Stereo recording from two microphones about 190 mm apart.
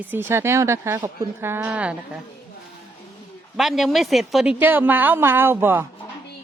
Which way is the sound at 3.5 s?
Centre (ahead or behind).